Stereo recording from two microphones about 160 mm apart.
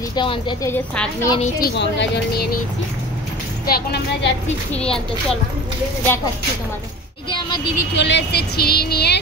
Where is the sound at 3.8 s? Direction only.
90° left.